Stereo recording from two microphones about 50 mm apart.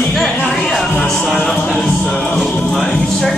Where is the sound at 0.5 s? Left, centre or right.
Centre.